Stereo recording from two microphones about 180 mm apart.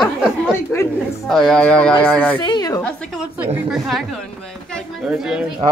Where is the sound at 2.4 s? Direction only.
25° left (ahead or behind).